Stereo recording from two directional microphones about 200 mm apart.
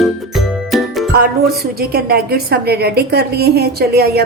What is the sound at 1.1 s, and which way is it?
A woman's voice, 50° right (ahead or behind).